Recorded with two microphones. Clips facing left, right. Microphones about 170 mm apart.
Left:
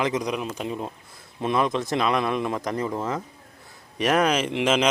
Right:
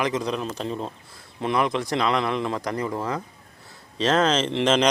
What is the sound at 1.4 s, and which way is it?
A man's voice, 20° left (ahead or behind).